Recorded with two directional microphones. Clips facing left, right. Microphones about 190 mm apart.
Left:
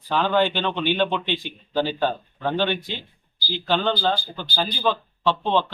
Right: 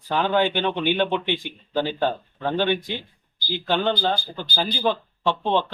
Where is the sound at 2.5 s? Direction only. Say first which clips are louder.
Right 3 dB; 15° right (ahead or behind).